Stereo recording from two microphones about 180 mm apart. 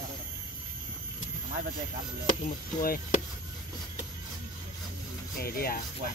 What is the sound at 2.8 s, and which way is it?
Chop, 55° left (ahead or behind).